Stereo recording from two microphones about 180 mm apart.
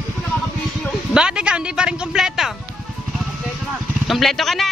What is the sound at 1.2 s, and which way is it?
Speech, 5° right (ahead or behind).